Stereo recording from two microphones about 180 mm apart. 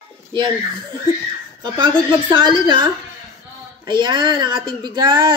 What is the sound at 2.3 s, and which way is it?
A woman's voice, 25° right (ahead or behind).